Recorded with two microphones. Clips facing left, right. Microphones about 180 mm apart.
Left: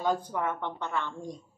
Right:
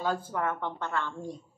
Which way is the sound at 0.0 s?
15° left (ahead or behind).